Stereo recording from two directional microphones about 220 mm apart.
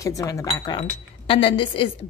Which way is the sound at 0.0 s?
15° left (ahead or behind).